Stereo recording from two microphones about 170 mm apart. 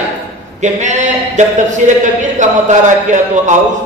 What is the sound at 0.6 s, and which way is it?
A man's voice, 45° right (ahead or behind).